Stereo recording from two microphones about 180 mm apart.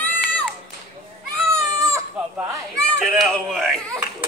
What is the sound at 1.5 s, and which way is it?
Baby cry, 15° right (ahead or behind).